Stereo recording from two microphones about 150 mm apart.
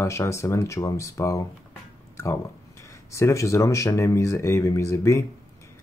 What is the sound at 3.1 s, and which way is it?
Speech, 20° left (ahead or behind).